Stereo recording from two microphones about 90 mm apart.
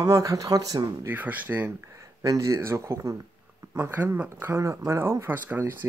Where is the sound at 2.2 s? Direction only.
35° right (ahead or behind).